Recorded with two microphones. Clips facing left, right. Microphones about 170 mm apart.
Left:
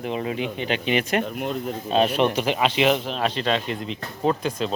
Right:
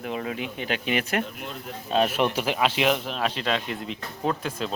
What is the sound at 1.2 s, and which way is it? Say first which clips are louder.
Speech: left 9 dB; 45° left (ahead or behind).